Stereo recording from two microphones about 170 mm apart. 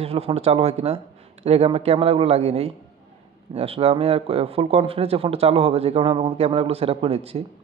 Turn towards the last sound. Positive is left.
turn(degrees=-35)  # may be behind; listen again after turning